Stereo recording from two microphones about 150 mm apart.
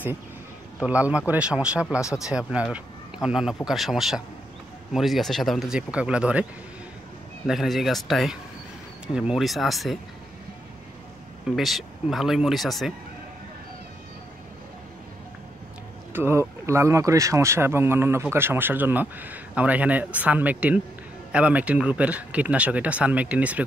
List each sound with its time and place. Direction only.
0.7 s speech: 10° right (ahead or behind)
7.4 s speech: centre (ahead or behind)
11.4 s speech: centre (ahead or behind)
16.1 s speech: 15° right (ahead or behind)